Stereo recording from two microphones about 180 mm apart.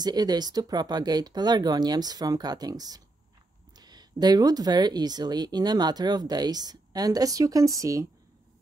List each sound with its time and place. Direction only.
0.0 s speech: 20° right (ahead or behind)